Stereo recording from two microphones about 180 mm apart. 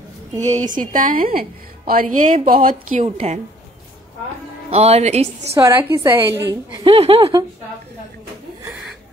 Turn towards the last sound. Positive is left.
turn(degrees=-30)  # may be behind; listen again after turning